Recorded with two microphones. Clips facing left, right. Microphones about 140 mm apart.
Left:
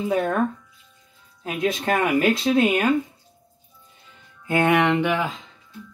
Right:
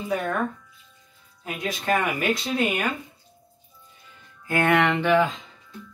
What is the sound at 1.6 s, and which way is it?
Speech, 25° left (ahead or behind).